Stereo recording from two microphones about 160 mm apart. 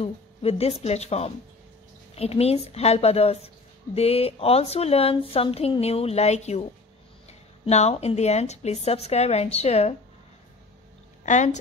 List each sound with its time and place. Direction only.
0.0 s a woman's voice: 40° left (ahead or behind)
11.2 s a woman's voice: 50° left (ahead or behind)